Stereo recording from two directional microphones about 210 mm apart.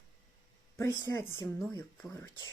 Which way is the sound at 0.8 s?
15° left (ahead or behind).